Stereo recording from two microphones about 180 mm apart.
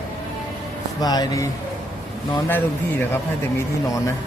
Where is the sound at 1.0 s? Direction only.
20° left (ahead or behind).